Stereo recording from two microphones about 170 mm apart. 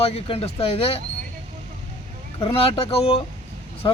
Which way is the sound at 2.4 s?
35° left (ahead or behind).